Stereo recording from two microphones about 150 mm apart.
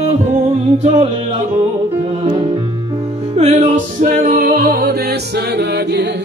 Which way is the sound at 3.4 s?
50° right (ahead or behind).